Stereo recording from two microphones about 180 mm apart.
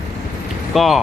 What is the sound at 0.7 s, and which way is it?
Speech, centre (ahead or behind).